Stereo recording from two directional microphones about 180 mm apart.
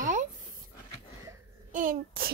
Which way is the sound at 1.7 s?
50° right (ahead or behind).